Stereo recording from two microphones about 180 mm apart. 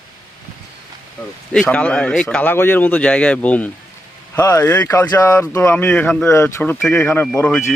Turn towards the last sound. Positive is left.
turn(degrees=5)  # may be behind; listen again after turning